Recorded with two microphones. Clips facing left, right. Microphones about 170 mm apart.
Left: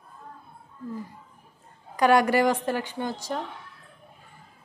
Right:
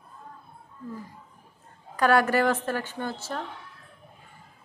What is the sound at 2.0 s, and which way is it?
A woman's voice, 15° left (ahead or behind).